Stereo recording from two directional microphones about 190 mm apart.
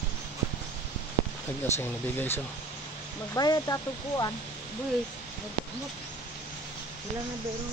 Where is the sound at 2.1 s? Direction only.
10° left (ahead or behind).